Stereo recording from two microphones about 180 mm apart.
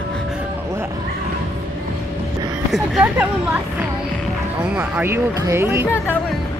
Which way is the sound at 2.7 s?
5° right (ahead or behind).